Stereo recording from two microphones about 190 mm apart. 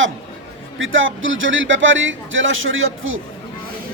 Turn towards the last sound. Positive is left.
turn(degrees=-90)